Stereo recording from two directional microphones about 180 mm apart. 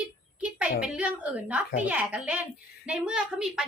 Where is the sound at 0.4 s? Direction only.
5° right (ahead or behind).